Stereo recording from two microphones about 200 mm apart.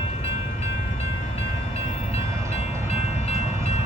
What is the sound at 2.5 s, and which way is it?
Train, 30° left (ahead or behind).